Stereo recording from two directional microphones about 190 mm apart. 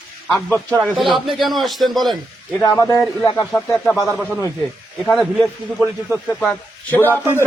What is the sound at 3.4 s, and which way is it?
A man's voice, 5° left (ahead or behind).